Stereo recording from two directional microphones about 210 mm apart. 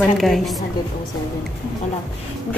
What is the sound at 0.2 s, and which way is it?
Speech, centre (ahead or behind).